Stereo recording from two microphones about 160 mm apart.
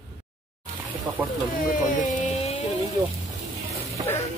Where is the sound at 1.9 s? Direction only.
55° left (ahead or behind).